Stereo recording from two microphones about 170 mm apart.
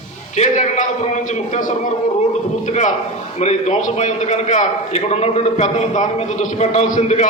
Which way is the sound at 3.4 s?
40° left (ahead or behind).